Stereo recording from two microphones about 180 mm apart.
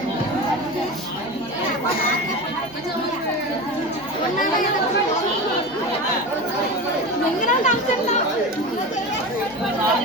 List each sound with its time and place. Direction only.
7.4 s chatter: 40° left (ahead or behind)